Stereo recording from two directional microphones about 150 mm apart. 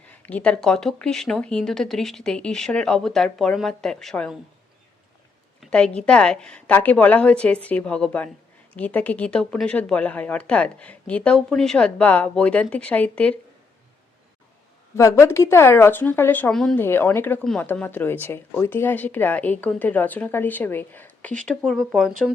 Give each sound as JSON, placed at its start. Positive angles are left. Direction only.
{"t": 0.1, "sound": "speech", "side_deg": 10}
{"t": 5.5, "sound": "a sound", "side_deg": 5}
{"t": 6.1, "sound": "speech", "side_deg": 5}
{"t": 14.9, "sound": "speech", "side_deg": 20}
{"t": 16.8, "sound": "speech", "side_deg": 15}